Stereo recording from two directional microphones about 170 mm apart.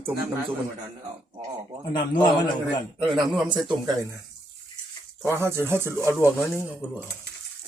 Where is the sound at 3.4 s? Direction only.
25° right (ahead or behind).